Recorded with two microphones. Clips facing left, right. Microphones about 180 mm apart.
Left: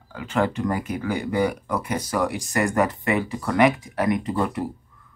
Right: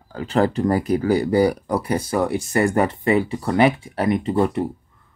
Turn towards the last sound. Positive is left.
turn(degrees=-25)  # may be behind; listen again after turning